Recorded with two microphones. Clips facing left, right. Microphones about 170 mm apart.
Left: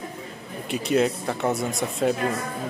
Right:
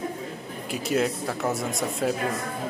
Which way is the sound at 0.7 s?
Centre (ahead or behind).